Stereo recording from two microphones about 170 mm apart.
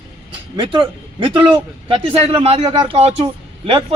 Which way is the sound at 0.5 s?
30° right (ahead or behind).